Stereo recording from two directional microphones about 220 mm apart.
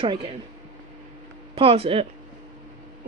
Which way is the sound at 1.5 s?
25° right (ahead or behind).